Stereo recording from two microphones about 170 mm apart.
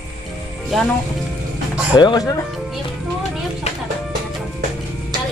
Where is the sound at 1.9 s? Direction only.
25° left (ahead or behind).